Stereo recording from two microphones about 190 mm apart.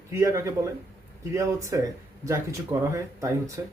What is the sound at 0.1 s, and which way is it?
Speech, 15° right (ahead or behind).